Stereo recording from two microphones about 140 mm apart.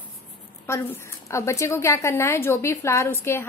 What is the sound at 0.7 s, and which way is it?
A woman's voice, 15° left (ahead or behind).